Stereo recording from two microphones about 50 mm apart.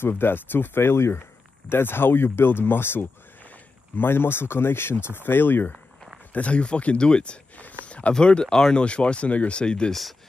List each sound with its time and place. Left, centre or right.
0.0 s speech: left
1.7 s speech: left
6.3 s speech: left
7.6 s a sound: left
8.1 s speech: centre